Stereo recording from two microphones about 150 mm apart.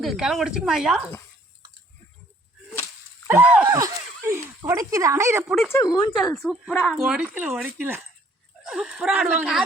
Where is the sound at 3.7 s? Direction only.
20° right (ahead or behind).